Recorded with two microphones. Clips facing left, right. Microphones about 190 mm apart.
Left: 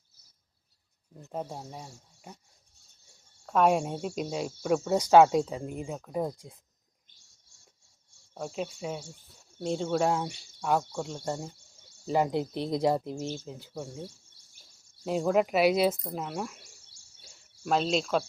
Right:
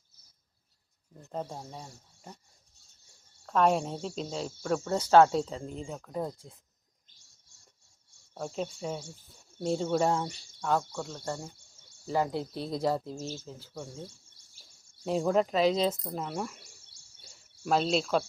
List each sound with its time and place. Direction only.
1.3 s speech: 10° left (ahead or behind)
3.4 s speech: 10° left (ahead or behind)
8.4 s speech: 5° left (ahead or behind)
15.0 s speech: centre (ahead or behind)
17.7 s speech: centre (ahead or behind)